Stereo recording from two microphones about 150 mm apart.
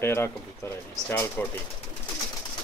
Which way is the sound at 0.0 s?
15° left (ahead or behind).